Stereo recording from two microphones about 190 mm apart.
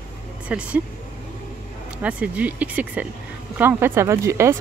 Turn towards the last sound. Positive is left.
turn(degrees=-15)  # may be behind; listen again after turning